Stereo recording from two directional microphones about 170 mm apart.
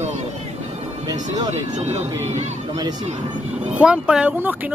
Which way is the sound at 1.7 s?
40° right (ahead or behind).